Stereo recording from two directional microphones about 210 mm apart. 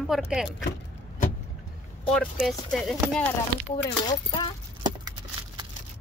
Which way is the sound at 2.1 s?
Centre (ahead or behind).